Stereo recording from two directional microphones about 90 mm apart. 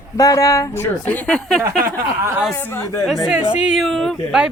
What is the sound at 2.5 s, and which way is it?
Speech, 30° left (ahead or behind).